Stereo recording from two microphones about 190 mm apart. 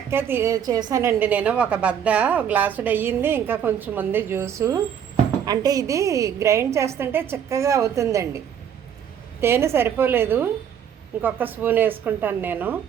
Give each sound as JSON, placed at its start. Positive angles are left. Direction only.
{"t": 0.1, "sound": "a woman's voice", "side_deg": -10}
{"t": 9.4, "sound": "a woman's voice", "side_deg": -15}